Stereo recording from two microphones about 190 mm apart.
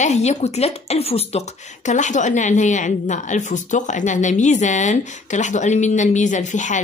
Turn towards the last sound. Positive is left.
turn(degrees=40)  # may be behind; listen again after turning